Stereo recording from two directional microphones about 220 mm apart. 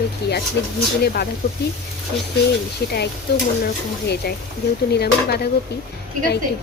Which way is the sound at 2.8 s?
50° left (ahead or behind).